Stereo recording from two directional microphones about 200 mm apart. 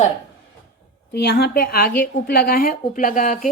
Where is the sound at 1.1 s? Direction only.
55° left (ahead or behind); by 3.5 s 40° left (ahead or behind).